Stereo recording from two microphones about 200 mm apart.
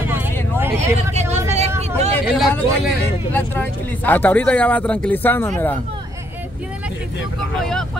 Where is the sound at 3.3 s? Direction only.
10° left (ahead or behind).